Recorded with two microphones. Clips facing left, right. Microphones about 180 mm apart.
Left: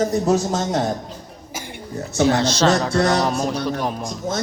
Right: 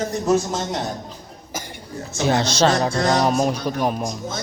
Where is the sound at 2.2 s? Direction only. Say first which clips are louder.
Left 1 dB; 15° right (ahead or behind).